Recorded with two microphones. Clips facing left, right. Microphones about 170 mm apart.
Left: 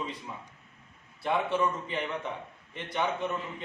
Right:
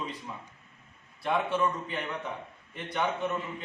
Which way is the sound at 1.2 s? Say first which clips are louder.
Even; centre (ahead or behind).